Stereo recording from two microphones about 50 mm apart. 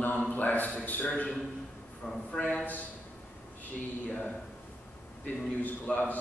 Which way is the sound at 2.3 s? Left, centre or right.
Left.